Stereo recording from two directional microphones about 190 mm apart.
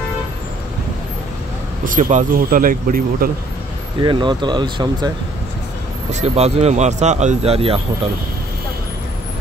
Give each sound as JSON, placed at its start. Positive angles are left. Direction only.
{"t": 1.9, "sound": "speech", "side_deg": -40}
{"t": 4.0, "sound": "speech", "side_deg": -25}
{"t": 6.2, "sound": "speech", "side_deg": -35}